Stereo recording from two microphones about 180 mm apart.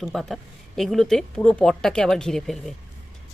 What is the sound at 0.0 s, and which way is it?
Speech, centre (ahead or behind).